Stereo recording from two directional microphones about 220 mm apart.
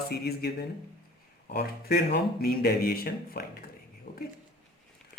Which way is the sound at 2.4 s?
45° left (ahead or behind).